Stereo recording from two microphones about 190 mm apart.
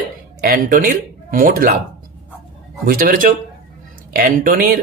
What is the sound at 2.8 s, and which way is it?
Speech, 50° right (ahead or behind).